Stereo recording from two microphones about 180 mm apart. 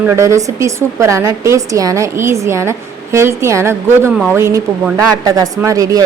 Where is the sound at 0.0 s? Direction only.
15° right (ahead or behind).